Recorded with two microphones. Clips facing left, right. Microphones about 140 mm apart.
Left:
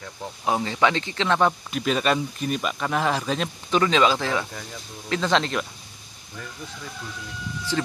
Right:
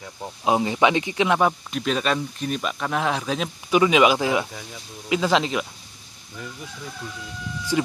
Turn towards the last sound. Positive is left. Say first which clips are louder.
# right 3 dB
turn(degrees=-10)  # may be behind; listen again after turning